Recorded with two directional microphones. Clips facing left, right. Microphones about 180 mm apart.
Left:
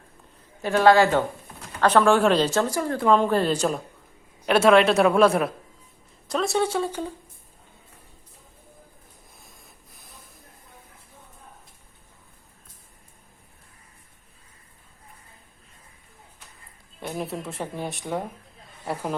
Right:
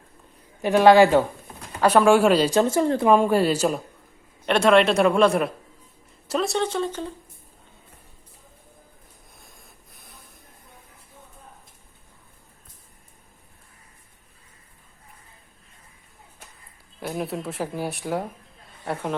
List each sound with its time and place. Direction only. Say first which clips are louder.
0.6 s speech: right 3 dB; 15° right (ahead or behind)
3.2 s speech: right 2 dB; 10° right (ahead or behind)
4.4 s speech: left 1 dB; 5° left (ahead or behind)
9.4 s spray: even; centre (ahead or behind)
17.0 s speech: right 2 dB; 5° right (ahead or behind)